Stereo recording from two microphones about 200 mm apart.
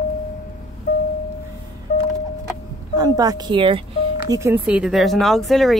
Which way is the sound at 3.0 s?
20° right (ahead or behind).